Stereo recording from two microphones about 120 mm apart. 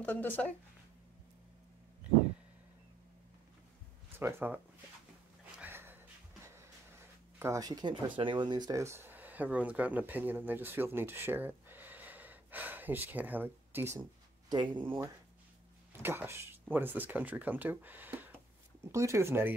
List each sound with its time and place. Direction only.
0.0 s speech: 15° left (ahead or behind)
4.2 s speech: 15° right (ahead or behind)
5.6 s a sound: 15° right (ahead or behind)
7.3 s speech: 25° right (ahead or behind)
14.5 s speech: 40° right (ahead or behind)
15.9 s speech: 20° right (ahead or behind)